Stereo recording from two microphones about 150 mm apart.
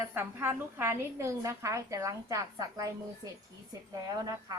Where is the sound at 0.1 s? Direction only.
15° right (ahead or behind).